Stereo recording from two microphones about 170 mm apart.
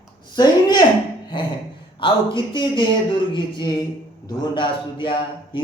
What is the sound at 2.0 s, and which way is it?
Speech, 30° left (ahead or behind).